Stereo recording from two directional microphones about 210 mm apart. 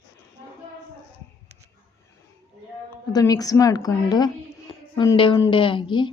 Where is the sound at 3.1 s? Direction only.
20° left (ahead or behind).